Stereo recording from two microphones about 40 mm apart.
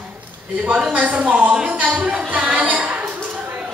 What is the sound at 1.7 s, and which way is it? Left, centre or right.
Speech, right.